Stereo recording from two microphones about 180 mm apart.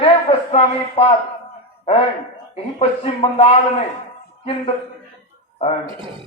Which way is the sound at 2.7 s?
35° left (ahead or behind).